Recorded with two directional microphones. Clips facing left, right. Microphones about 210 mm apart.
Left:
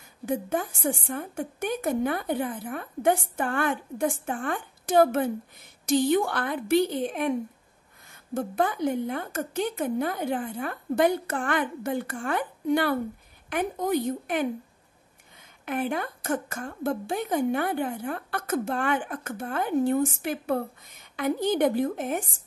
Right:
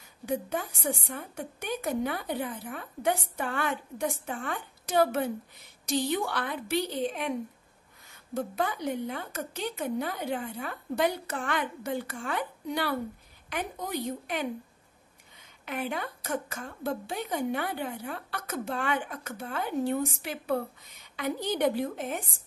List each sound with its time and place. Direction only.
0.3 s a woman's voice: 50° left (ahead or behind)
15.6 s a woman's voice: 50° left (ahead or behind)